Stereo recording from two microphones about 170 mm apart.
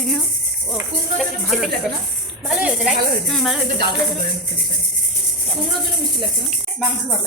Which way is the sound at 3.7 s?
70° right (ahead or behind).